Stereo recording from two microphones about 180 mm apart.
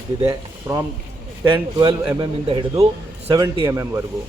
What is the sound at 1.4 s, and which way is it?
Speech, 25° right (ahead or behind).